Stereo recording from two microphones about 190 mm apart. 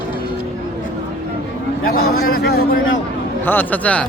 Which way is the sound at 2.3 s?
55° left (ahead or behind).